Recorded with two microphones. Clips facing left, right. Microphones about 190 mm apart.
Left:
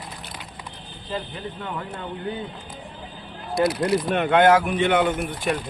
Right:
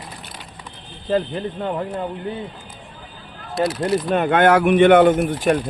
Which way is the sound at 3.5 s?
25° right (ahead or behind).